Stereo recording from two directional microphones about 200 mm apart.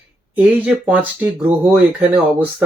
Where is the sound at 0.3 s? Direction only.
5° right (ahead or behind).